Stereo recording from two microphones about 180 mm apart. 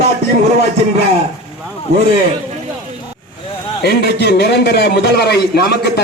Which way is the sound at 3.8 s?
65° left (ahead or behind).